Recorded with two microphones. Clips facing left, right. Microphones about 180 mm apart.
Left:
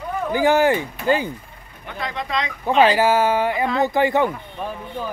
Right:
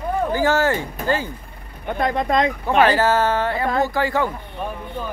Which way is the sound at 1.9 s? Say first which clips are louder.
Right 7 dB; 50° right (ahead or behind).